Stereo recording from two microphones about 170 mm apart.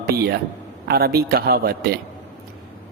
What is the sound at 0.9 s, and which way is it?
A man's voice, 65° right (ahead or behind).